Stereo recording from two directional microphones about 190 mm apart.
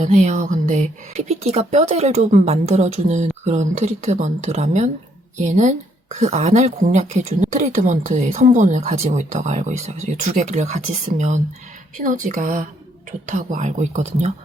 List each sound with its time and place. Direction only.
0.0 s a woman's voice: 35° right (ahead or behind)